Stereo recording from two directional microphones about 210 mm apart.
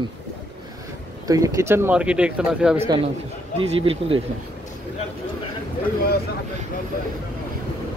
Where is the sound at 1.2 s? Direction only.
15° right (ahead or behind).